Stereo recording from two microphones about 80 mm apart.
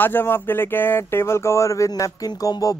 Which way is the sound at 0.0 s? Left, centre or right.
Left.